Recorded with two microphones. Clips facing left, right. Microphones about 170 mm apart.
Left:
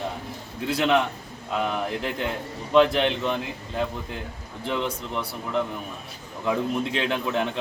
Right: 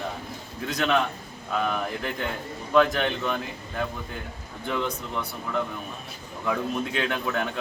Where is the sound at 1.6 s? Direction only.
20° left (ahead or behind).